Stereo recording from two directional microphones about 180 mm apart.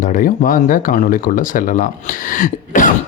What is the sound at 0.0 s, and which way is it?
Speech, 50° left (ahead or behind).